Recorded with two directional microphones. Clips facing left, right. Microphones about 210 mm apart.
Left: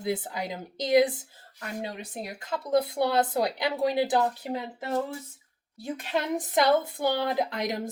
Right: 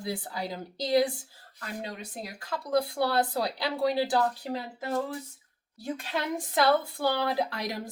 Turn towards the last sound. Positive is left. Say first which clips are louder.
# left 3 dB
turn(degrees=20)  # may be behind; listen again after turning